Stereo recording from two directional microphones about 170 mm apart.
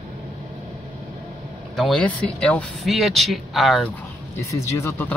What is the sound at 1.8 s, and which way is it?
Speech, 5° left (ahead or behind).